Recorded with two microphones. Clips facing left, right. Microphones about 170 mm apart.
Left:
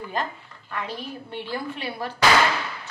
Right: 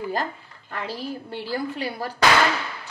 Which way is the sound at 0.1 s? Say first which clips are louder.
Right 2 dB; 35° right (ahead or behind).